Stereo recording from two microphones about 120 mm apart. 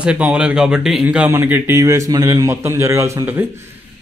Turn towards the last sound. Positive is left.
turn(degrees=-25)  # may be behind; listen again after turning